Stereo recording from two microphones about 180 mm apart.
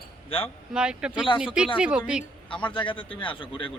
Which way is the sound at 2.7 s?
25° left (ahead or behind).